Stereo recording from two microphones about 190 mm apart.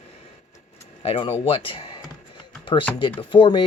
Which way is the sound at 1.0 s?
30° left (ahead or behind).